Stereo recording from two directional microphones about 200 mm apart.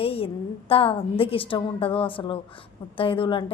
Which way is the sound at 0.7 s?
25° left (ahead or behind).